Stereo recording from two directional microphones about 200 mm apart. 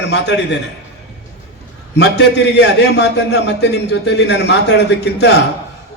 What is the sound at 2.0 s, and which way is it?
A man's voice, 60° left (ahead or behind).